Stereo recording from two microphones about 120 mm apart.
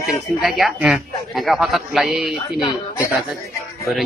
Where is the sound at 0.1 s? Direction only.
Centre (ahead or behind).